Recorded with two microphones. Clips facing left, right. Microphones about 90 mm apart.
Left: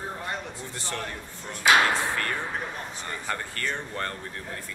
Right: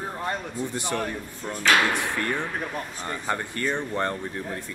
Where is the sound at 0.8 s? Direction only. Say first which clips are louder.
Right 4 dB; 15° right (ahead or behind).